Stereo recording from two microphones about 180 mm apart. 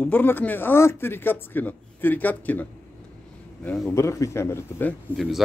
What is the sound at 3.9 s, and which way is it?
Speech, 15° left (ahead or behind).